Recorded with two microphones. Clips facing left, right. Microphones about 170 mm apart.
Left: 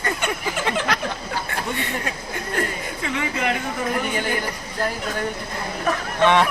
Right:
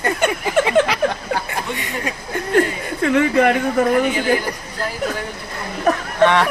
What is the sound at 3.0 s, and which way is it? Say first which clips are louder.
Speech: right 12 dB; 55° right (ahead or behind).